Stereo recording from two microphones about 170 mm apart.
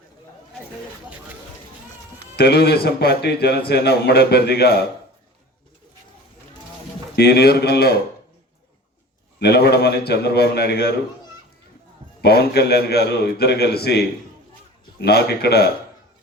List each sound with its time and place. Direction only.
2.3 s a man's voice: 70° left (ahead or behind)
7.2 s a man's voice: 70° left (ahead or behind)
9.4 s a man's voice: 70° left (ahead or behind)
12.2 s a man's voice: 70° left (ahead or behind)